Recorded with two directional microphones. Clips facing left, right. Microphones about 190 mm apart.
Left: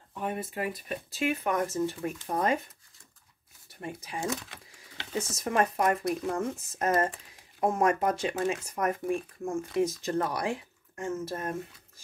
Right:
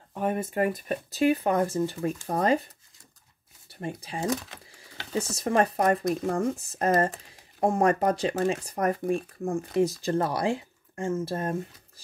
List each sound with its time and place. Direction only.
0.1 s speech: 45° right (ahead or behind)
3.8 s speech: 30° right (ahead or behind)